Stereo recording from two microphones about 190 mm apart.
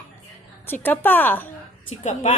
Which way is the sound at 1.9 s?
40° left (ahead or behind).